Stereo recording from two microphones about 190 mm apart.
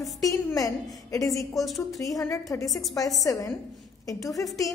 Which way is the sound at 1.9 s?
20° left (ahead or behind).